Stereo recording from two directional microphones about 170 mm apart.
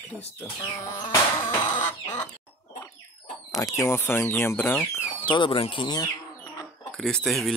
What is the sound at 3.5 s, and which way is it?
Speech, 20° left (ahead or behind).